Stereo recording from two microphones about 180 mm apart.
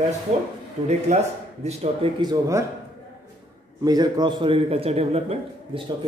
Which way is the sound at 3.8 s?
20° right (ahead or behind).